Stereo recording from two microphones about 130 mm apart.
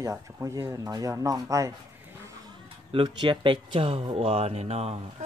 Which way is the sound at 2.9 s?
40° right (ahead or behind).